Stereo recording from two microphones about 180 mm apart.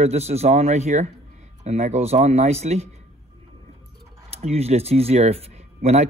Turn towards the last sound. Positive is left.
turn(degrees=-35)  # may be behind; listen again after turning